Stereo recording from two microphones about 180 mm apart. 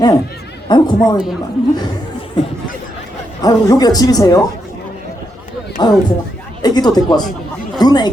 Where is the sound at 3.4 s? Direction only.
20° left (ahead or behind).